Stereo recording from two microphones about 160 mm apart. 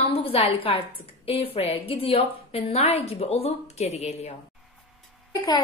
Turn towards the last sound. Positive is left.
turn(degrees=25)  # may be behind; listen again after turning